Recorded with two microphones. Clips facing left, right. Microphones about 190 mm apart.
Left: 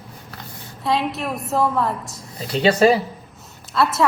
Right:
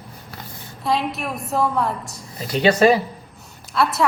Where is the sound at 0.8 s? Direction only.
Centre (ahead or behind).